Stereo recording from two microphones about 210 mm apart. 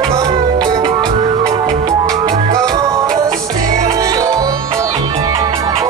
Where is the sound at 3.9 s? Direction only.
15° right (ahead or behind).